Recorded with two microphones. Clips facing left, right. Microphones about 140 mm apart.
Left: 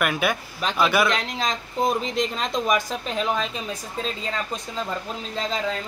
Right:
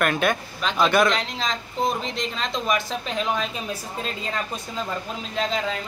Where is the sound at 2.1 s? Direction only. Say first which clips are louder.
Left 3 dB; 50° left (ahead or behind).